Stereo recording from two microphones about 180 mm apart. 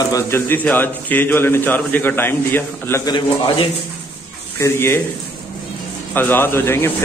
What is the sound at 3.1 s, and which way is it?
Speech, 30° left (ahead or behind).